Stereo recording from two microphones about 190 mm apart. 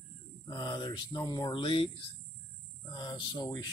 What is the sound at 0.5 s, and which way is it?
Speech, 20° left (ahead or behind).